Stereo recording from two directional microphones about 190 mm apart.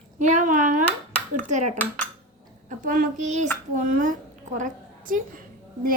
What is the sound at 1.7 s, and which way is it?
Dishes, 10° left (ahead or behind).